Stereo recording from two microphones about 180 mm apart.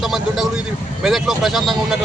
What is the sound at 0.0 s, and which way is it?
Speech, centre (ahead or behind).